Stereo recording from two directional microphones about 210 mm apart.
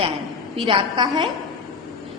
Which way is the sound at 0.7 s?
20° right (ahead or behind).